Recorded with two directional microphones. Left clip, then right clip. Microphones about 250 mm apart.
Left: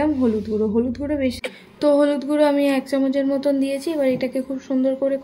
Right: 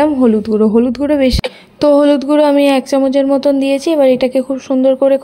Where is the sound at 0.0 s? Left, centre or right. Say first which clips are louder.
Right 9 dB; right.